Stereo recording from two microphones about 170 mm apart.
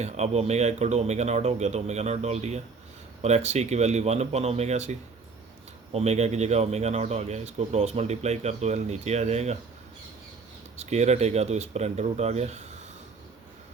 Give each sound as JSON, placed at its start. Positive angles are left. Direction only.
{"t": 0.0, "sound": "speech", "side_deg": -40}
{"t": 10.8, "sound": "speech", "side_deg": -40}